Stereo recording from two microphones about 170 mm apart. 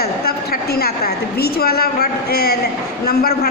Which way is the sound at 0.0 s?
65° left (ahead or behind).